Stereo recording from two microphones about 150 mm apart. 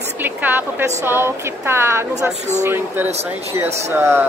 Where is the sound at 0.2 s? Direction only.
15° right (ahead or behind).